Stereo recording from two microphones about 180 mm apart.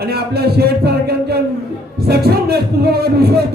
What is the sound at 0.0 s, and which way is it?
A man's voice, 60° right (ahead or behind).